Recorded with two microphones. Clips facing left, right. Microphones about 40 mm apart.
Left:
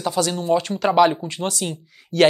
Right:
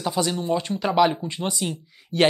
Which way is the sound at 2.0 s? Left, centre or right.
Centre.